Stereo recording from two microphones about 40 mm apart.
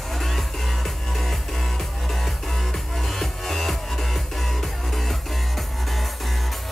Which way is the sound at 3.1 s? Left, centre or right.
Centre.